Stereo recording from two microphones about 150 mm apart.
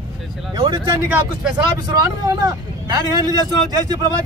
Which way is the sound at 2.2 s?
25° right (ahead or behind).